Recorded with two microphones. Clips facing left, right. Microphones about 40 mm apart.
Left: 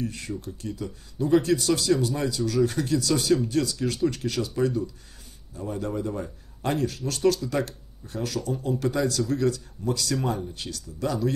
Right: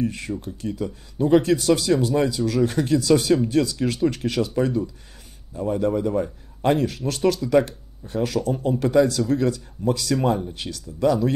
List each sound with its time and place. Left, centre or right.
0.0 s speech: right
8.5 s speech: right
8.8 s speech: right